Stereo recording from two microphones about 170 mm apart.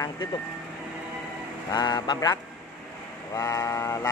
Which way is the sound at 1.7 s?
25° left (ahead or behind).